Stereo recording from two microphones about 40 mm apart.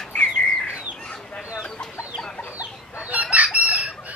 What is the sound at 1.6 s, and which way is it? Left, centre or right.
Chicken, centre.